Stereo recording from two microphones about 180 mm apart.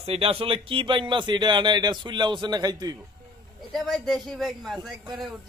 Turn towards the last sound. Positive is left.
turn(degrees=0)  # may be behind; listen again after turning